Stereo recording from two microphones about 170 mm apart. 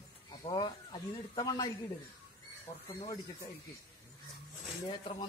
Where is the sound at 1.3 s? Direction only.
25° left (ahead or behind).